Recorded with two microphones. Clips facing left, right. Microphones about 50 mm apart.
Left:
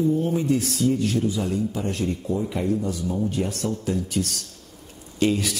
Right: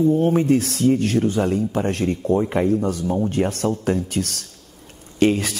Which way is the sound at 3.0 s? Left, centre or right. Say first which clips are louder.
Right 4 dB; right.